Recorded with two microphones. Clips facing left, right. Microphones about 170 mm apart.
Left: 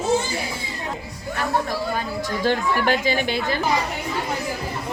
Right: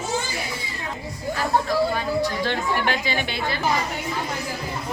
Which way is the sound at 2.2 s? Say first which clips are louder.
Left 2 dB; 45° left (ahead or behind).